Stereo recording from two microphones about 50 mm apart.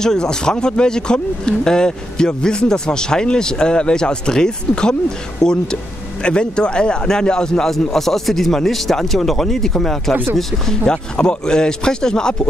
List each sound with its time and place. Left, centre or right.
0.0 s speech: centre